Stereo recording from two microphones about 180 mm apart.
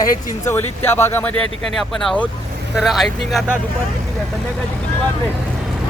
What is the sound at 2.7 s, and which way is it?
Speech, centre (ahead or behind).